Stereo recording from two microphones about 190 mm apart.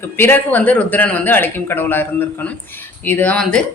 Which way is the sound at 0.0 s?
10° left (ahead or behind).